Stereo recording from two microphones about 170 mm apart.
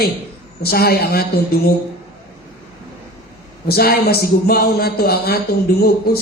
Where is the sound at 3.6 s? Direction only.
65° left (ahead or behind).